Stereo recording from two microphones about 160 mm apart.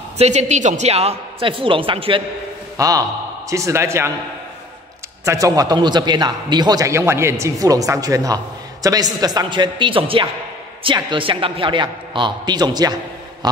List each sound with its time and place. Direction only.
0.2 s a man's voice: 45° right (ahead or behind)
2.8 s a man's voice: 20° right (ahead or behind)
5.2 s a man's voice: 20° right (ahead or behind)